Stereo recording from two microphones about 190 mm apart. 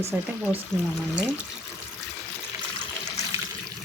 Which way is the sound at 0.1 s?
10° right (ahead or behind).